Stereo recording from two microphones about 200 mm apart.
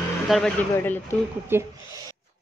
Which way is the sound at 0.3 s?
5° left (ahead or behind).